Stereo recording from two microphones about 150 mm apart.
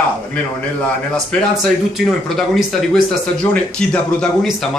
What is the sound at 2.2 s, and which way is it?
Speech, centre (ahead or behind).